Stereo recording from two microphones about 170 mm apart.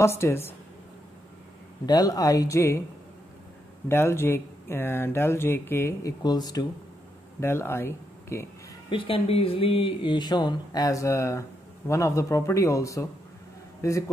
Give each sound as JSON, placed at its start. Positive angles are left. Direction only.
{"t": 0.0, "sound": "speech", "side_deg": 15}
{"t": 1.9, "sound": "speech", "side_deg": 20}
{"t": 3.9, "sound": "speech", "side_deg": 15}
{"t": 8.9, "sound": "a man's voice", "side_deg": 30}